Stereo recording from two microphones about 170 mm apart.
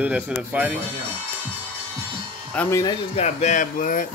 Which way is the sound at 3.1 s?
40° left (ahead or behind).